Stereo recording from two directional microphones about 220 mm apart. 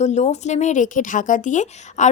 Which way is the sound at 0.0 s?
30° left (ahead or behind).